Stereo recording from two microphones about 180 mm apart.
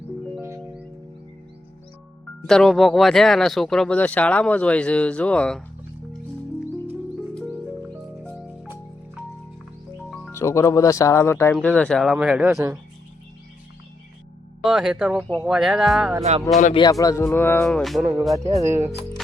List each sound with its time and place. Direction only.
2.5 s speech: 5° left (ahead or behind)
10.3 s speech: 15° left (ahead or behind); by 12.5 s 5° right (ahead or behind)
14.6 s speech: centre (ahead or behind)
16.7 s speech: 20° left (ahead or behind)
17.7 s speech: centre (ahead or behind)
18.0 s speech: 15° right (ahead or behind)